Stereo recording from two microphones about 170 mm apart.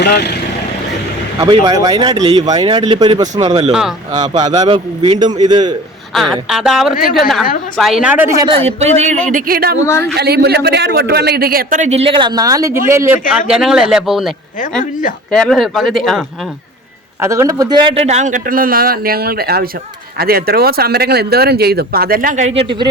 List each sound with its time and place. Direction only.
0.0 s speech: 75° left (ahead or behind)
1.4 s a man's voice: 25° right (ahead or behind)
3.4 s speech: 35° right (ahead or behind)
3.7 s speech: 5° right (ahead or behind)
4.1 s a man's voice: 25° right (ahead or behind)
6.1 s speech: centre (ahead or behind)
6.9 s a woman's voice: 60° left (ahead or behind)
7.8 s speech: centre (ahead or behind)
8.4 s speech: 30° right (ahead or behind)
9.3 s speech: 60° right (ahead or behind); by 13.1 s 15° right (ahead or behind)
13.5 s speech: 5° right (ahead or behind)
17.2 s a man's voice: 15° right (ahead or behind)